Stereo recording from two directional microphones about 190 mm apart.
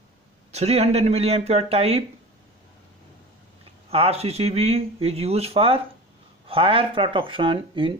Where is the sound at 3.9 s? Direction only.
30° right (ahead or behind).